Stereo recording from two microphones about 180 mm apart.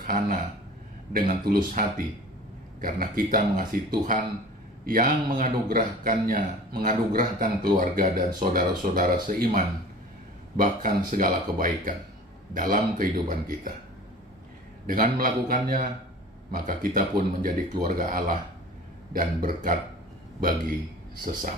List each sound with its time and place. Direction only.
0.0 s speech: 50° right (ahead or behind)
14.9 s a man's voice: 50° right (ahead or behind)